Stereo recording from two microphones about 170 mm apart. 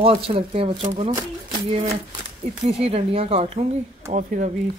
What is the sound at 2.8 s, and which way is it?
Speech, 35° right (ahead or behind).